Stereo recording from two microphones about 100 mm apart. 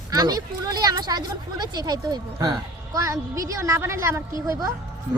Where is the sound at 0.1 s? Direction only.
40° right (ahead or behind).